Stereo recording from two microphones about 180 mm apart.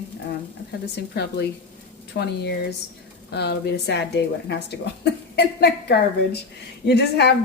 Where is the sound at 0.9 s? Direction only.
65° left (ahead or behind).